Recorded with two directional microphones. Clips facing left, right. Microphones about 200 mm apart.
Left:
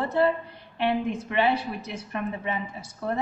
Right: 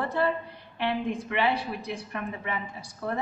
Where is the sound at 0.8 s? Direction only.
25° left (ahead or behind).